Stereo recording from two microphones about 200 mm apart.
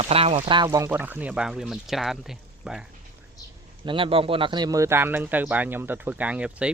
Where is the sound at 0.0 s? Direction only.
30° right (ahead or behind); by 2.8 s centre (ahead or behind).